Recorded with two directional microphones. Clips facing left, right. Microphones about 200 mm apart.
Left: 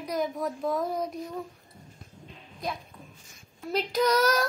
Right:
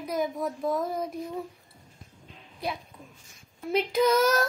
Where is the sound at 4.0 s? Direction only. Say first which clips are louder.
Right 1 dB; 10° right (ahead or behind).